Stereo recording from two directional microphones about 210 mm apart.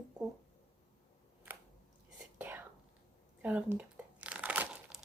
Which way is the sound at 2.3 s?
10° right (ahead or behind).